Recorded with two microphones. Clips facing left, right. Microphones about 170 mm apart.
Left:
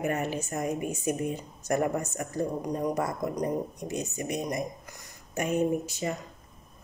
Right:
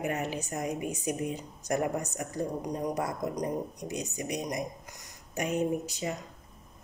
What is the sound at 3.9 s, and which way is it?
A woman's voice, 15° right (ahead or behind).